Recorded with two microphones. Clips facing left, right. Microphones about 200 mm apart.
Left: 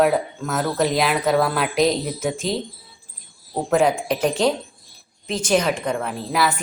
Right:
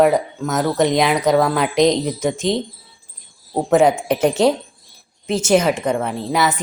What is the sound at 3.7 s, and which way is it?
Speech, centre (ahead or behind).